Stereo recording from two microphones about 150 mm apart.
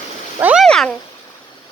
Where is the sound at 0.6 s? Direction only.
5° left (ahead or behind).